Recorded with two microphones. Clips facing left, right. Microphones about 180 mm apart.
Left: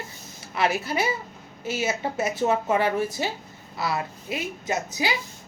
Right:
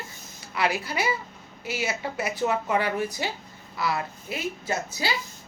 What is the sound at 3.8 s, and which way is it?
Speech, 25° left (ahead or behind).